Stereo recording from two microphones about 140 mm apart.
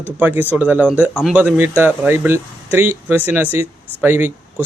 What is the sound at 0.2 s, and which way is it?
Speech, 15° right (ahead or behind).